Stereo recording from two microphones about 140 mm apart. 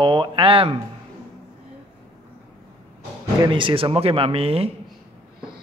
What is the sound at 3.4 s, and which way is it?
Speech, 35° right (ahead or behind).